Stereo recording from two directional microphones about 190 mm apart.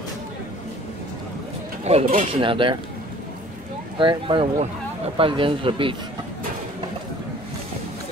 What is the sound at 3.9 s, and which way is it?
Speech, 25° right (ahead or behind).